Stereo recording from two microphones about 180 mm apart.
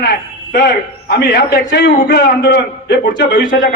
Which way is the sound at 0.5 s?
60° left (ahead or behind).